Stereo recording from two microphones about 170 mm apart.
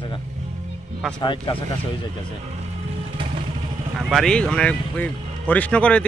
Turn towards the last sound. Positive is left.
turn(degrees=10)  # may be behind; listen again after turning